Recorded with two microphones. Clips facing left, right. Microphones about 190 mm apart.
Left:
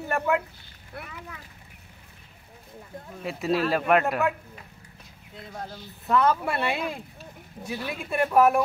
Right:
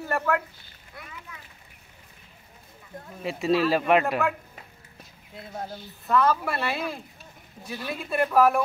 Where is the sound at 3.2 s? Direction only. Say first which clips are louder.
Right 2 dB; centre (ahead or behind).